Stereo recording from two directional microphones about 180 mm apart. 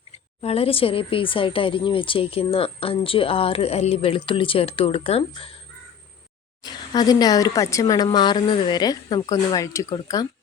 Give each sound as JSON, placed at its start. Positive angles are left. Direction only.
{"t": 0.4, "sound": "speech", "side_deg": 35}
{"t": 6.6, "sound": "speech", "side_deg": 20}